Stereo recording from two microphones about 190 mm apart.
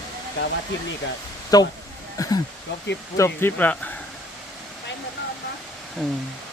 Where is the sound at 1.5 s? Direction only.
20° left (ahead or behind).